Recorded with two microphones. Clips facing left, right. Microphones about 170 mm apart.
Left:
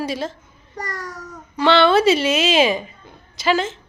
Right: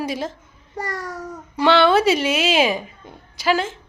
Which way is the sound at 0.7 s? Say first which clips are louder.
Right 3 dB; 25° right (ahead or behind).